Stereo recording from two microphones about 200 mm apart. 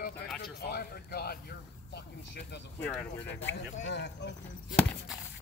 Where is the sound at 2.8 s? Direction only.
10° left (ahead or behind).